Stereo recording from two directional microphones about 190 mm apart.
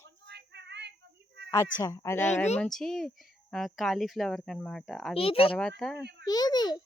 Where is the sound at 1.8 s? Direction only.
15° left (ahead or behind).